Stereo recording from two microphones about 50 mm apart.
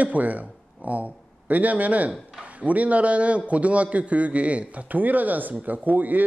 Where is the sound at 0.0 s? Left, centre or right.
Right.